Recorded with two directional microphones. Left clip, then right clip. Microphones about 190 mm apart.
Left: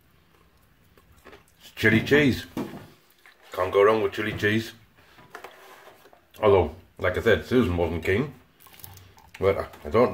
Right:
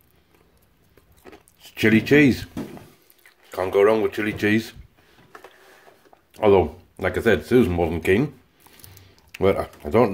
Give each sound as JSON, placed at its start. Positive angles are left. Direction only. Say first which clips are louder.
{"t": 1.6, "sound": "speech", "louder": "right 2 dB", "side_deg": -40}
{"t": 3.5, "sound": "speech", "louder": "right 2 dB", "side_deg": -40}
{"t": 6.3, "sound": "speech", "louder": "right 3 dB", "side_deg": -35}
{"t": 8.8, "sound": "a sound", "louder": "even", "side_deg": -5}
{"t": 9.3, "sound": "speech", "louder": "right 3 dB", "side_deg": -45}